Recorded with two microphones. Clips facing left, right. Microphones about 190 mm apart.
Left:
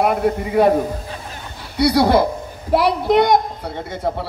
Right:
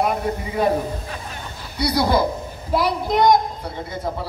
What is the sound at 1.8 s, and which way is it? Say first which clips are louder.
A man's voice: left 5 dB; 70° left (ahead or behind).